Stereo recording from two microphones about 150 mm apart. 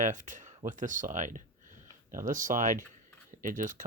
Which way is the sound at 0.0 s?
60° right (ahead or behind).